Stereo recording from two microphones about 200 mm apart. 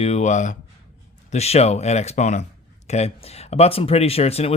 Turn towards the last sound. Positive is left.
turn(degrees=30)  # may be behind; listen again after turning